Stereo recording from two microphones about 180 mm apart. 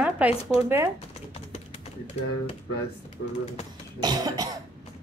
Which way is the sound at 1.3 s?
35° left (ahead or behind).